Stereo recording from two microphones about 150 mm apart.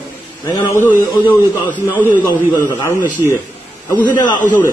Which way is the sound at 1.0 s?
30° left (ahead or behind).